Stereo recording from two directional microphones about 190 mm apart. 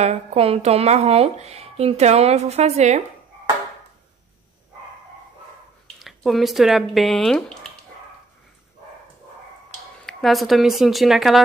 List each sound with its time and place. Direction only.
0.0 s speech: 35° right (ahead or behind)
5.9 s speech: centre (ahead or behind)
10.0 s speech: centre (ahead or behind)